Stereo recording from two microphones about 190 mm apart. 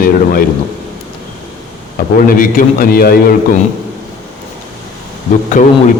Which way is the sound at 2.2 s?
45° left (ahead or behind).